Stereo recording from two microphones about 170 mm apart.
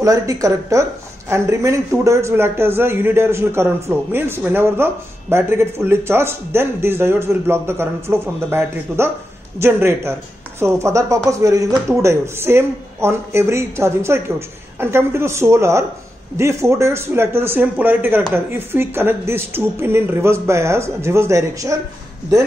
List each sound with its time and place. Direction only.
0.0 s a woman's voice: 20° right (ahead or behind)